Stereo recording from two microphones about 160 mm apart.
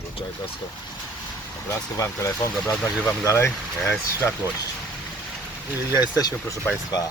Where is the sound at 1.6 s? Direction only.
20° left (ahead or behind).